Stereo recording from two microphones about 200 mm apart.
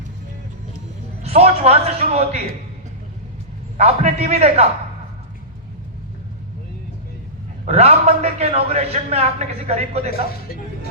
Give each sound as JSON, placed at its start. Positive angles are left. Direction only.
{"t": 1.2, "sound": "a man's voice", "side_deg": -30}
{"t": 3.8, "sound": "a man's voice", "side_deg": -30}
{"t": 7.6, "sound": "a man's voice", "side_deg": -30}